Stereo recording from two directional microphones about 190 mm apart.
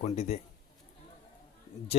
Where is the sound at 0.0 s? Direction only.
35° left (ahead or behind).